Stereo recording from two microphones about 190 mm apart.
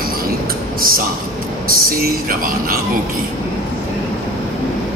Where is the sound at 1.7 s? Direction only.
50° right (ahead or behind).